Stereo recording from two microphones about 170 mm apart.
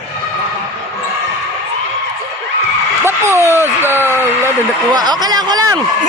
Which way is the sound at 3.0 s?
15° right (ahead or behind).